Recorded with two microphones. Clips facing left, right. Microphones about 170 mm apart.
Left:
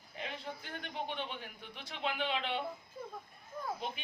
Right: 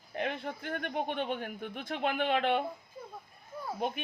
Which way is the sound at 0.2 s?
55° right (ahead or behind).